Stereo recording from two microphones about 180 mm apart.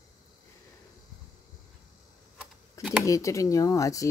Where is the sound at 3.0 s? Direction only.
15° left (ahead or behind).